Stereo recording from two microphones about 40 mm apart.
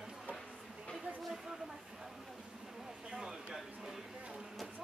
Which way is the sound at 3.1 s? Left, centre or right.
Centre.